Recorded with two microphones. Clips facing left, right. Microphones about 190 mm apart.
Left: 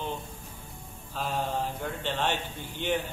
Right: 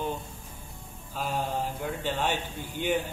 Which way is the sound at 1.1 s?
10° right (ahead or behind).